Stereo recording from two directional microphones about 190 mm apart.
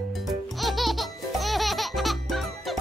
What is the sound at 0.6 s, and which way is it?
Music, centre (ahead or behind).